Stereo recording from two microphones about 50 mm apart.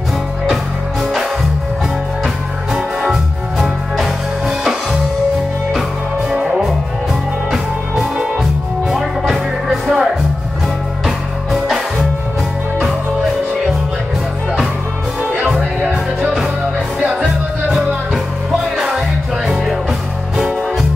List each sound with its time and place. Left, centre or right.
2.2 s music: centre
6.3 s music: centre
17.6 s music: centre